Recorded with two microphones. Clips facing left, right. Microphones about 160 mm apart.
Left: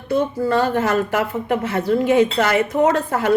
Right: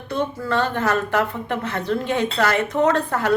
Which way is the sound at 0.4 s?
15° left (ahead or behind).